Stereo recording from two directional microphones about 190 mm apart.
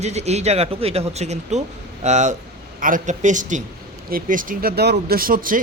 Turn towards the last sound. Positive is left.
turn(degrees=-45)  # may be behind; listen again after turning